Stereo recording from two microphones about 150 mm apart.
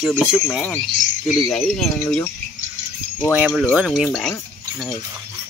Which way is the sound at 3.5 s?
5° left (ahead or behind).